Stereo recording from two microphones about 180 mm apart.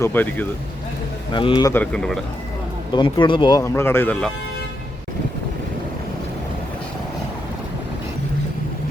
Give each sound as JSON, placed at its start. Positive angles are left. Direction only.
{"t": 0.0, "sound": "a man's voice", "side_deg": 10}
{"t": 1.3, "sound": "speech", "side_deg": 25}
{"t": 1.8, "sound": "speech", "side_deg": 5}
{"t": 2.9, "sound": "speech", "side_deg": 25}
{"t": 3.6, "sound": "a man's voice", "side_deg": 15}